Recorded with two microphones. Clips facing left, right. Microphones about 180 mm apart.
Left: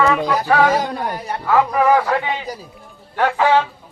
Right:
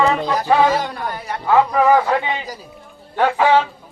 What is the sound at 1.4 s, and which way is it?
A man's voice, 20° right (ahead or behind).